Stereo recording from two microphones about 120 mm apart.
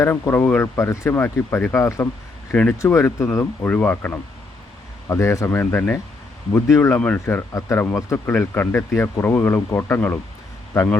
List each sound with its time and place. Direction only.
0.0 s speech: 20° left (ahead or behind)